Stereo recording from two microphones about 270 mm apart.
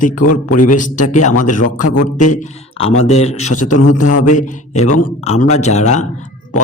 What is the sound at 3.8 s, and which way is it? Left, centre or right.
A man's voice, left.